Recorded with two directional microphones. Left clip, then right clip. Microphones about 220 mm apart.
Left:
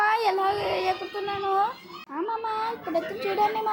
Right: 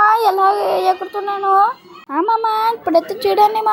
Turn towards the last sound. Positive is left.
turn(degrees=-35)  # may be behind; listen again after turning